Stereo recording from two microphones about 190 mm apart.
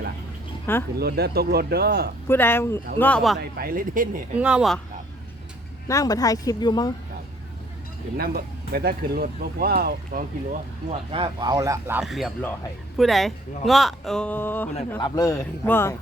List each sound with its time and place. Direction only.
0.9 s speech: 55° right (ahead or behind)
2.2 s speech: 10° left (ahead or behind)
3.6 s speech: 50° right (ahead or behind)
4.4 s speech: 5° right (ahead or behind)
5.9 s speech: 20° left (ahead or behind)
8.2 s speech: 55° right (ahead or behind)
11.1 s speech: 25° right (ahead or behind); by 14.7 s 10° left (ahead or behind)
14.9 s speech: 20° left (ahead or behind)